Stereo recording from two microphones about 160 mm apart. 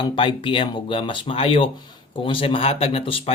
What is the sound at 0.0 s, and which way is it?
Speech, 30° left (ahead or behind).